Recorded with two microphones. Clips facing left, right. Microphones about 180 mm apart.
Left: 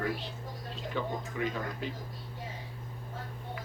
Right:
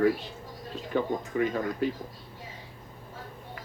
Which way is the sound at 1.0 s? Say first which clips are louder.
Right 7 dB; 50° right (ahead or behind).